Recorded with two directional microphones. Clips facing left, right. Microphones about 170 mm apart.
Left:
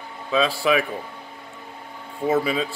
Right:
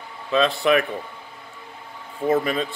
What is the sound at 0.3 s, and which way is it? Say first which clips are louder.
Speech: right 1 dB; 5° left (ahead or behind).